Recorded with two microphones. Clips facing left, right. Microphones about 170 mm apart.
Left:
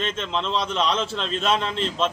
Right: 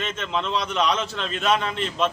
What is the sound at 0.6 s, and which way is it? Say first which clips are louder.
A man's voice: even; 25° left (ahead or behind).